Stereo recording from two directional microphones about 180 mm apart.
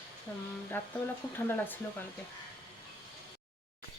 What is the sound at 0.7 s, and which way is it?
Speech, 10° left (ahead or behind).